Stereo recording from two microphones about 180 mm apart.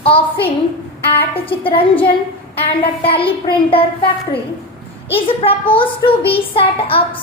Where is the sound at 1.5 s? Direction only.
30° left (ahead or behind).